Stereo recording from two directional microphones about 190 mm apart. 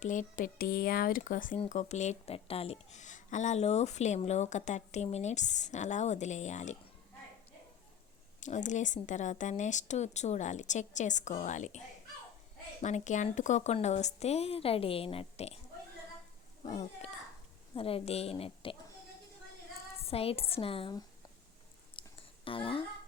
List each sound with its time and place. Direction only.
0.0 s speech: 40° left (ahead or behind)
1.5 s speech: 35° left (ahead or behind)
8.4 s speech: 40° left (ahead or behind)
12.8 s speech: 40° left (ahead or behind)
16.6 s a woman's voice: 40° left (ahead or behind)
20.1 s speech: 30° left (ahead or behind)
21.9 s a sound: 25° left (ahead or behind)